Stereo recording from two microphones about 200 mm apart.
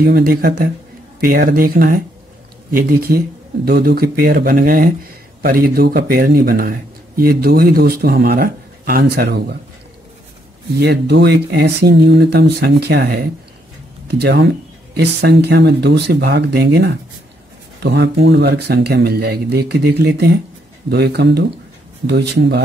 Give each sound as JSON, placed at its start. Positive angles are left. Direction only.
{"t": 0.0, "sound": "speech", "side_deg": -50}
{"t": 10.8, "sound": "speech", "side_deg": -55}